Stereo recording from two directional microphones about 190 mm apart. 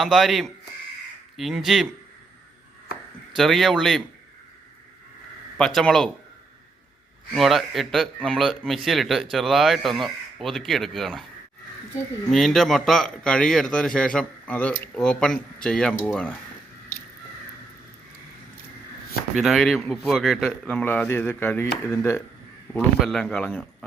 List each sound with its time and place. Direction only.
0.0 s speech: centre (ahead or behind)
3.3 s speech: centre (ahead or behind)
5.5 s speech: 5° left (ahead or behind)
7.3 s speech: centre (ahead or behind)
12.3 s speech: centre (ahead or behind)
19.4 s speech: centre (ahead or behind)
22.7 s speech: centre (ahead or behind)